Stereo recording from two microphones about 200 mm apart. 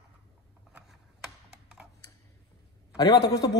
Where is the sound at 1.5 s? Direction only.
5° right (ahead or behind).